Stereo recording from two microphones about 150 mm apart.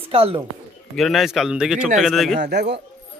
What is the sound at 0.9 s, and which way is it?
Speech, centre (ahead or behind).